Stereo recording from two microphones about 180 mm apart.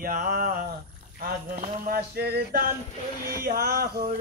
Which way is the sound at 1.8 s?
60° right (ahead or behind).